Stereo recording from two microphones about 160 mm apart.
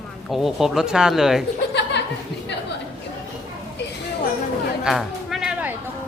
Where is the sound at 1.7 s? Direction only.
90° left.